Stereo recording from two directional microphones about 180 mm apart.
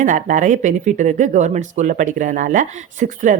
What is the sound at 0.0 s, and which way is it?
Speech, 45° right (ahead or behind).